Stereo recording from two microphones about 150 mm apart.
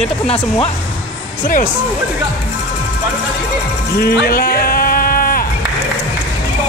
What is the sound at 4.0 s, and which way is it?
Music, 90° left.